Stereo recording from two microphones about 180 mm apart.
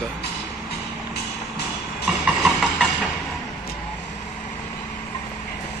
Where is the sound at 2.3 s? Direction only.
Centre (ahead or behind).